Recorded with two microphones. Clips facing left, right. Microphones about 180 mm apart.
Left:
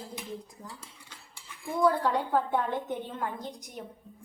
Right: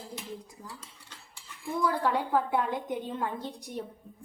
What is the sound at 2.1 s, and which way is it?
A woman's voice, 10° right (ahead or behind).